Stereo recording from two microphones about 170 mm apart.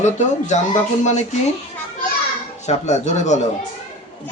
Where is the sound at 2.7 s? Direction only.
40° left (ahead or behind).